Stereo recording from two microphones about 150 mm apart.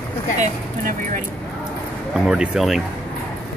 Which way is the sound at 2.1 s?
5° right (ahead or behind).